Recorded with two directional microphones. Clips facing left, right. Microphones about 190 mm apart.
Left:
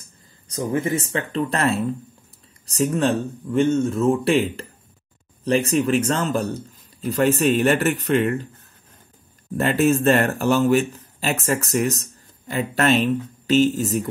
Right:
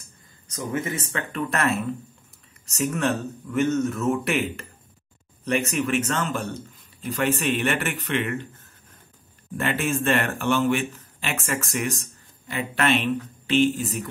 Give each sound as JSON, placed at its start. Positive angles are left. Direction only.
{"t": 0.5, "sound": "speech", "side_deg": 30}
{"t": 9.6, "sound": "speech", "side_deg": 40}